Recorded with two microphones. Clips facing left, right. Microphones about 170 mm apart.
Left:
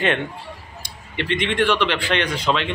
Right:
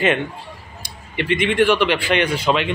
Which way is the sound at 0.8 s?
10° right (ahead or behind).